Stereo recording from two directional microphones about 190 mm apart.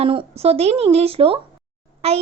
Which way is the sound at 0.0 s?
30° right (ahead or behind).